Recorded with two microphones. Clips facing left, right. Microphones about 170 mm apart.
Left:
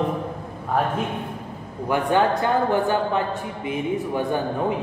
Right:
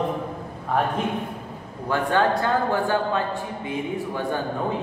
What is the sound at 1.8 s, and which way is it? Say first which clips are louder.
A man's voice: left 1 dB; 20° left (ahead or behind).